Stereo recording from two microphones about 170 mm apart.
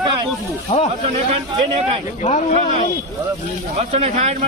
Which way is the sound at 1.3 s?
35° right (ahead or behind).